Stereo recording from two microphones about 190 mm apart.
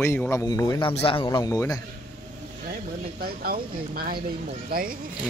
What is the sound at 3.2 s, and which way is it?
Speech, 50° right (ahead or behind).